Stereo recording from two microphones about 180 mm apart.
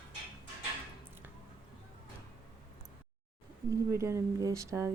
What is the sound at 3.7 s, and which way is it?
Speech, 15° right (ahead or behind).